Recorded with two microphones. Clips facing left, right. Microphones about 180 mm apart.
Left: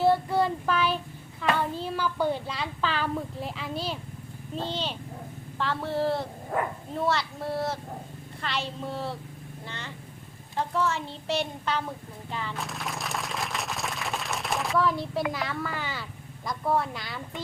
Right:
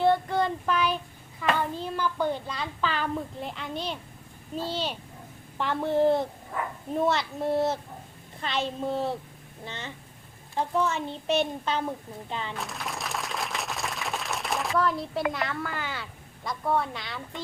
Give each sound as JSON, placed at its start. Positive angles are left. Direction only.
{"t": 0.0, "sound": "child singing", "side_deg": 5}
{"t": 1.8, "sound": "speech", "side_deg": 10}
{"t": 4.6, "sound": "a woman's voice", "side_deg": -10}
{"t": 12.5, "sound": "applause", "side_deg": 0}
{"t": 15.3, "sound": "speech", "side_deg": 0}